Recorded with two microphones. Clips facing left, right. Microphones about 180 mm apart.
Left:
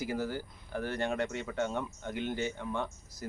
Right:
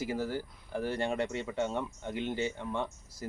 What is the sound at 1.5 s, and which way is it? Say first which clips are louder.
Speech: right 1 dB; centre (ahead or behind).